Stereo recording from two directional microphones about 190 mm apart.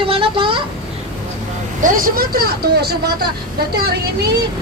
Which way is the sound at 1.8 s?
45° right (ahead or behind).